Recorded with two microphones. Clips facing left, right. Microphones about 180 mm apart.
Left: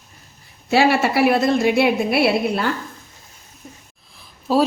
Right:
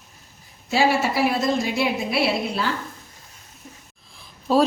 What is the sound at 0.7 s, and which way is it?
A woman's voice, 65° left (ahead or behind).